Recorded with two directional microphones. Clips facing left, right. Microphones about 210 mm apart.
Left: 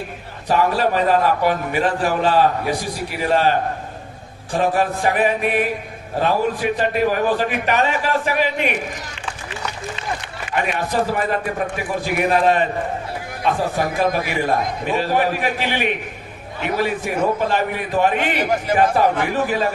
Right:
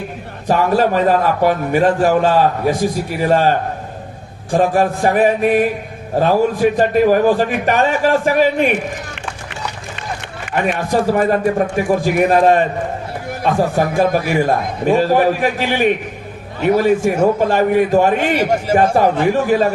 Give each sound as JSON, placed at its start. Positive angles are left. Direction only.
{"t": 0.4, "sound": "a man's voice", "side_deg": -45}
{"t": 4.5, "sound": "a man's voice", "side_deg": -45}
{"t": 10.5, "sound": "a man's voice", "side_deg": -45}
{"t": 13.8, "sound": "a man's voice", "side_deg": -45}